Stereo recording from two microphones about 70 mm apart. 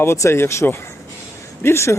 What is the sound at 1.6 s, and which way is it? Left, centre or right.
Speech, left.